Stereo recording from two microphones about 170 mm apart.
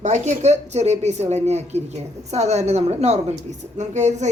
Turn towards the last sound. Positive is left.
turn(degrees=-45)  # may be behind; listen again after turning